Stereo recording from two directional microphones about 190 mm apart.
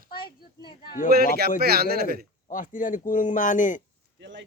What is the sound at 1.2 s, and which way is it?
Speech, 55° right (ahead or behind).